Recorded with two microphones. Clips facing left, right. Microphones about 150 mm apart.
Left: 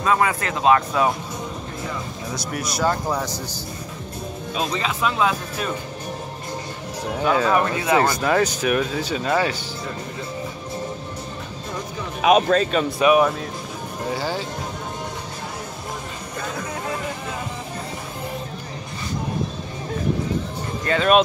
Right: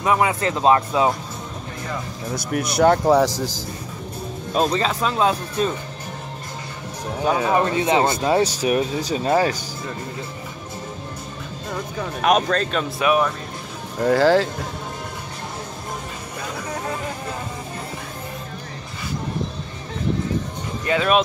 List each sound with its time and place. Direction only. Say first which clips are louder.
0.0 s speech: right 1 dB; 20° right (ahead or behind)
2.3 s speech: right 6 dB; 60° right (ahead or behind); by 3.6 s 90° right
4.6 s speech: right 5 dB; 35° right (ahead or behind)
7.2 s speech: left 1 dB; 15° right (ahead or behind)
7.5 s speech: right 1 dB; 25° right (ahead or behind)
12.2 s speech: left 3 dB; 5° left (ahead or behind)
14.0 s speech: right 11 dB; 90° right
20.8 s speech: left 1 dB; 5° right (ahead or behind)